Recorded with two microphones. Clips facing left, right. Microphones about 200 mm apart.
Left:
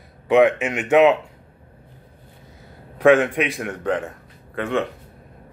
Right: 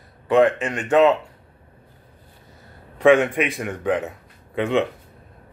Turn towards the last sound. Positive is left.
turn(degrees=-15)  # may be behind; listen again after turning